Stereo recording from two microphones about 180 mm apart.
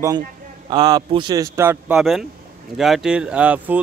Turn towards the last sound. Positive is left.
turn(degrees=-10)  # may be behind; listen again after turning